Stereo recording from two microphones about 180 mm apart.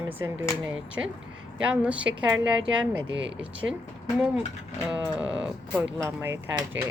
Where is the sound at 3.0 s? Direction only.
90° right.